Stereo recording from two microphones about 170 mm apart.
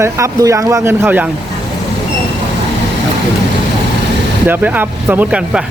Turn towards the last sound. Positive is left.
turn(degrees=-5)  # may be behind; listen again after turning